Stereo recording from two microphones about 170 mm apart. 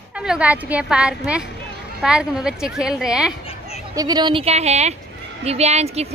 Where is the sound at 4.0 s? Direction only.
25° right (ahead or behind); by 6.0 s 40° right (ahead or behind).